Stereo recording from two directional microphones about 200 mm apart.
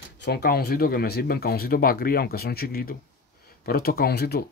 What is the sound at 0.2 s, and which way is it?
Speech, 55° left (ahead or behind).